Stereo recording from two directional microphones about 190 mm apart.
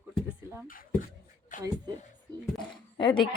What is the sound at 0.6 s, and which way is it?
Speech, 45° left (ahead or behind).